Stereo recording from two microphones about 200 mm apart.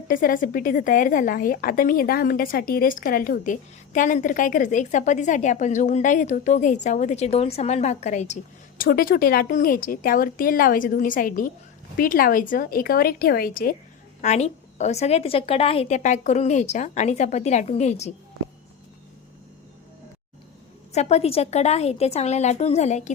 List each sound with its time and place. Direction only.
0.1 s a woman's voice: 45° left (ahead or behind)
8.8 s speech: 45° left (ahead or behind)
14.2 s a woman's voice: 35° left (ahead or behind)
20.9 s a woman's voice: 35° left (ahead or behind)